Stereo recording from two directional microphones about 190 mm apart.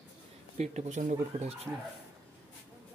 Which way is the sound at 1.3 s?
30° right (ahead or behind).